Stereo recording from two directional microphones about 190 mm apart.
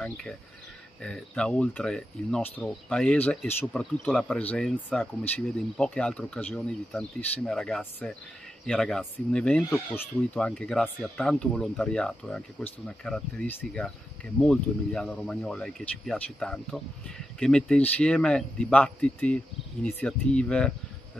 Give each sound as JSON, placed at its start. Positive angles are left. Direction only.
{"t": 1.0, "sound": "speech", "side_deg": 5}